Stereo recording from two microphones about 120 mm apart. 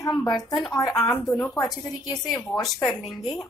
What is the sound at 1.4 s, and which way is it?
Speech, 25° left (ahead or behind).